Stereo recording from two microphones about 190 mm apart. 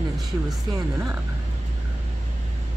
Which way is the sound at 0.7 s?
15° right (ahead or behind).